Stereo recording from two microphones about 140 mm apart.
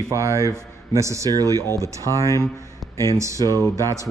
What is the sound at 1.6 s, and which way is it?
Speech, 20° left (ahead or behind).